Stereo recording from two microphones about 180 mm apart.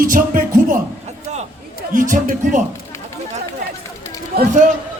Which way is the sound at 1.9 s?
45° right (ahead or behind).